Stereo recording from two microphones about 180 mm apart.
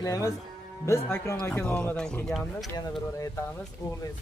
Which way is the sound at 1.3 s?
10° left (ahead or behind).